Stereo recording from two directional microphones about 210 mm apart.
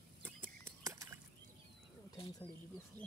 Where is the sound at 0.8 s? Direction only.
15° right (ahead or behind).